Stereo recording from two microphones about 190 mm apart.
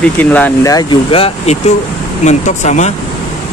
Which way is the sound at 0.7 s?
30° left (ahead or behind).